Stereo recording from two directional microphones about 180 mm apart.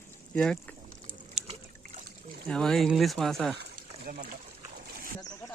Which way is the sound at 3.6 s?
55° right (ahead or behind).